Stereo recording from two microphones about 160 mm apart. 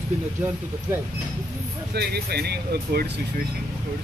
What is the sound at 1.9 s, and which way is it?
Speech, 90° right.